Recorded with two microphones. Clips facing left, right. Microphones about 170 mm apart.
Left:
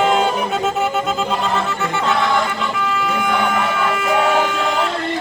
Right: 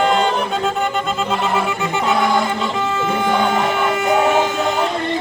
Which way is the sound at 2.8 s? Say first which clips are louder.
Even; 25° right (ahead or behind).